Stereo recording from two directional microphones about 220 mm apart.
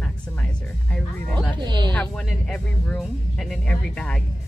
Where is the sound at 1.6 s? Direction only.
20° right (ahead or behind).